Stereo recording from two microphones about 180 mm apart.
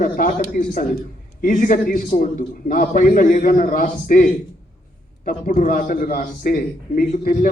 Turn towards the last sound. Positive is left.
turn(degrees=50)  # may be behind; listen again after turning